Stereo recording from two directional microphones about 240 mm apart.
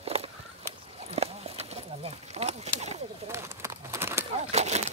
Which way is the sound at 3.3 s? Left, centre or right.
Centre.